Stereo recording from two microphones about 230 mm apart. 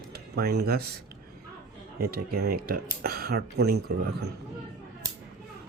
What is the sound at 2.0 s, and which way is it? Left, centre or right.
Speech, right.